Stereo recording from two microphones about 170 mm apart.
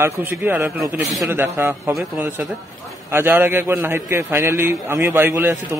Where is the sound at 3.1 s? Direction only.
15° right (ahead or behind).